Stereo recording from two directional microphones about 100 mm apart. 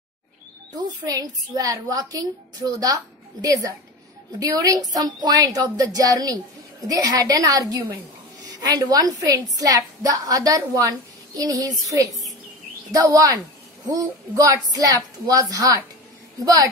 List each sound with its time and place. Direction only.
0.7 s a woman's voice: 40° right (ahead or behind)
12.1 s a sound: centre (ahead or behind)
12.9 s a woman's voice: 35° right (ahead or behind)